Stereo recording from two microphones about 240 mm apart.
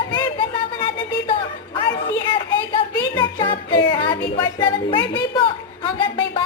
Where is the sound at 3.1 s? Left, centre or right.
Centre.